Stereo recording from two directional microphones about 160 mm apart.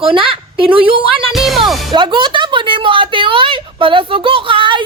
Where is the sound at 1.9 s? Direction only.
30° right (ahead or behind).